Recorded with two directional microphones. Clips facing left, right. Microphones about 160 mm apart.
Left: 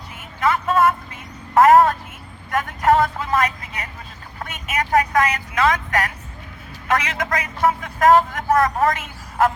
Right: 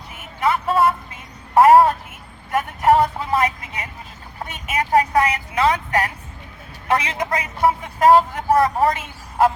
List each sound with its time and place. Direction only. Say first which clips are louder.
0.3 s a man's voice: even; 25° right (ahead or behind)